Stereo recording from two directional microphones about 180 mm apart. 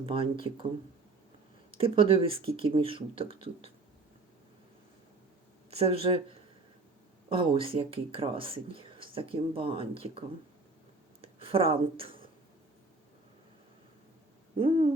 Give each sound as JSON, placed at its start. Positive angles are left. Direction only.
{"t": 0.0, "sound": "speech", "side_deg": -30}
{"t": 1.7, "sound": "speech", "side_deg": -30}
{"t": 5.7, "sound": "speech", "side_deg": -35}
{"t": 7.3, "sound": "speech", "side_deg": -30}
{"t": 14.5, "sound": "owl", "side_deg": -30}